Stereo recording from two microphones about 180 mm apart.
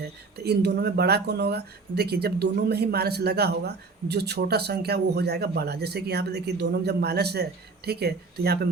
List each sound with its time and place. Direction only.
0.3 s speech: 65° right (ahead or behind)